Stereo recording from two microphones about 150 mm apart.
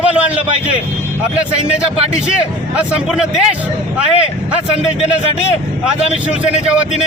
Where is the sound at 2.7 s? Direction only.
5° right (ahead or behind).